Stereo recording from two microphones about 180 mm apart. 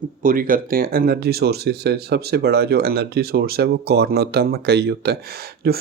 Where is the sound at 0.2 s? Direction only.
50° right (ahead or behind).